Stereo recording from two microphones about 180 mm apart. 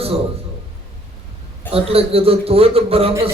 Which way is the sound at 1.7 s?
30° right (ahead or behind).